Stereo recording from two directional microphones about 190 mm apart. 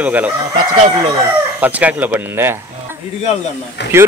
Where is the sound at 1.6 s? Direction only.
10° right (ahead or behind).